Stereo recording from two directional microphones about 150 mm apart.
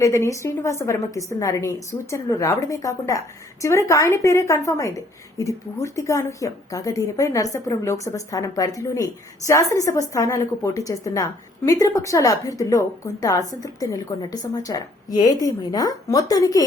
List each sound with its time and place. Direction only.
0.0 s a woman's voice: 20° left (ahead or behind)